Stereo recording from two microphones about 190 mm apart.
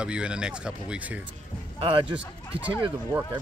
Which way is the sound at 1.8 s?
25° right (ahead or behind).